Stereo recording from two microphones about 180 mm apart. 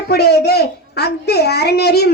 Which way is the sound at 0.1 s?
65° left (ahead or behind).